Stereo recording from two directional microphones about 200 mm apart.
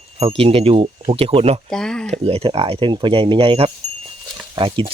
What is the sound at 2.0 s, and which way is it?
Speech, 30° right (ahead or behind).